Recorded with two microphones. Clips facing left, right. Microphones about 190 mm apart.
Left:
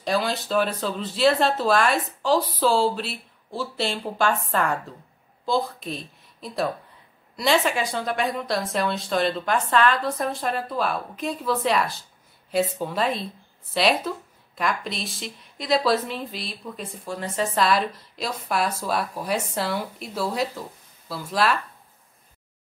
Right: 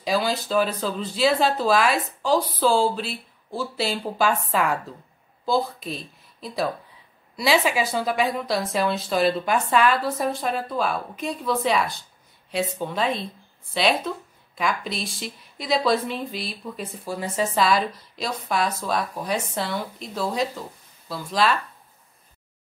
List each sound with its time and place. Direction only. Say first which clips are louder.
0.0 s a woman's voice: right 1 dB; centre (ahead or behind)